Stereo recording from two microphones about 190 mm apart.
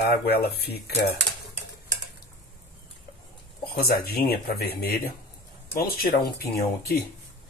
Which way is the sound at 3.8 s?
55° left (ahead or behind).